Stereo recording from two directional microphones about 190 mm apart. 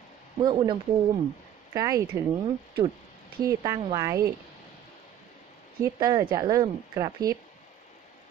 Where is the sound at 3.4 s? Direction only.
20° right (ahead or behind).